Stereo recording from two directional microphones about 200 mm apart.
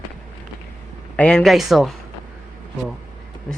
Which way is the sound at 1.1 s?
5° left (ahead or behind).